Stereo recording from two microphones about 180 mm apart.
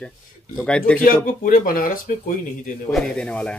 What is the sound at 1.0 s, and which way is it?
Speech, 50° left (ahead or behind).